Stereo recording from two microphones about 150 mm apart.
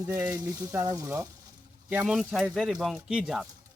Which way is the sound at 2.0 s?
Centre (ahead or behind).